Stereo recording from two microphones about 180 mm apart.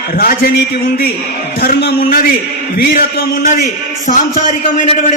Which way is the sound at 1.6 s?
60° left (ahead or behind).